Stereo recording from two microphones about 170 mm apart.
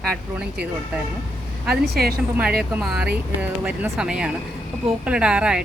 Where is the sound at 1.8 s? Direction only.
65° right (ahead or behind).